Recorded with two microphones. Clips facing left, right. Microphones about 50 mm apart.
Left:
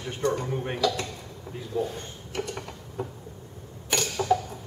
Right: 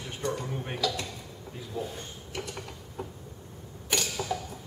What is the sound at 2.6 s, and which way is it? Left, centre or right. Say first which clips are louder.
Mechanisms: left 4 dB; centre.